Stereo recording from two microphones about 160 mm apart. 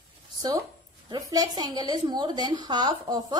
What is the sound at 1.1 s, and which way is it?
A woman's voice, 25° right (ahead or behind).